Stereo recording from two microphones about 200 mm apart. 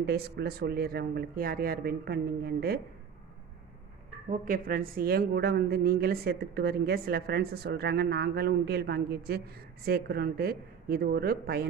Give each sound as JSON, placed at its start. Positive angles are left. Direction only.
{"t": 0.0, "sound": "speech", "side_deg": -50}
{"t": 4.3, "sound": "speech", "side_deg": -45}